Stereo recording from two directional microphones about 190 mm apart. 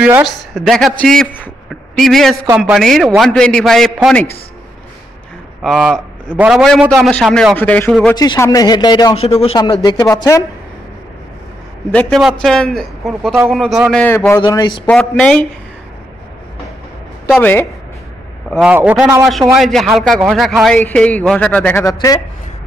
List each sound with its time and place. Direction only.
0.0 s a man's voice: 5° right (ahead or behind)
5.6 s a man's voice: centre (ahead or behind)
8.1 s speech: 15° left (ahead or behind)
11.9 s a man's voice: 5° left (ahead or behind)
14.9 s a man's voice: 5° left (ahead or behind)
17.3 s speech: 10° left (ahead or behind)
18.6 s a man's voice: 10° right (ahead or behind)
19.2 s a man's voice: centre (ahead or behind)
21.8 s speech: 20° left (ahead or behind)